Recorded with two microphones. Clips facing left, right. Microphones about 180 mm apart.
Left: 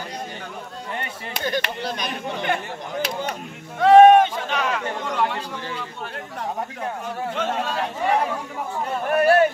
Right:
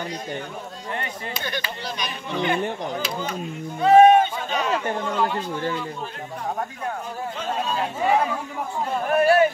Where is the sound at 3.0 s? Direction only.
80° left.